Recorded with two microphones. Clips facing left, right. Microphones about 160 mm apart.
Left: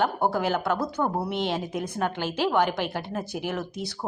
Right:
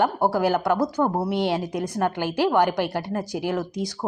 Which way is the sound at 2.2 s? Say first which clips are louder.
Right 3 dB; 15° right (ahead or behind).